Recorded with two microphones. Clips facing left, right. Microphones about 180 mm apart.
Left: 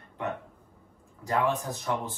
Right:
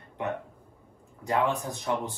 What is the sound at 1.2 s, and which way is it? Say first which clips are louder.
Speech: even; 20° right (ahead or behind).